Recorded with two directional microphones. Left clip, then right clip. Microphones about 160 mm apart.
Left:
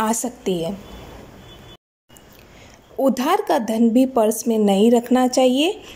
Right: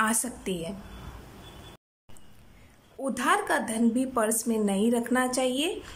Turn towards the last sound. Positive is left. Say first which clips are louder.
# left 11 dB
turn(degrees=25)  # may be behind; listen again after turning